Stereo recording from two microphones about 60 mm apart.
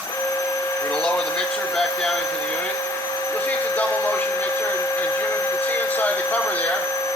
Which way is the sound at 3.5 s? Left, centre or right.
Left.